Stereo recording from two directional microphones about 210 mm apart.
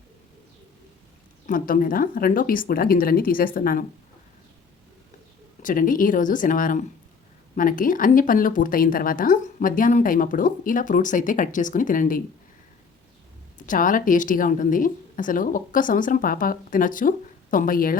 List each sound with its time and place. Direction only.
1.5 s speech: 40° left (ahead or behind)
5.6 s speech: 40° left (ahead or behind)
13.6 s speech: 40° left (ahead or behind)